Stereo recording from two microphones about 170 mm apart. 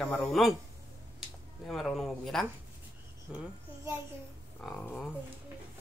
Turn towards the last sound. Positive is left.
turn(degrees=0)  # may be behind; listen again after turning